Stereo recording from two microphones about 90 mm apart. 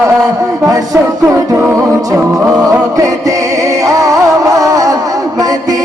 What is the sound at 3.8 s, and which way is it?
Music, 40° right (ahead or behind).